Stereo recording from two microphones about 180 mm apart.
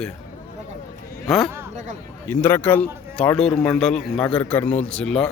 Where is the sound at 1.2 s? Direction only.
Centre (ahead or behind).